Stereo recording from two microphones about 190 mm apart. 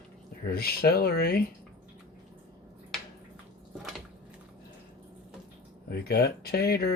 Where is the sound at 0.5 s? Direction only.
55° left (ahead or behind).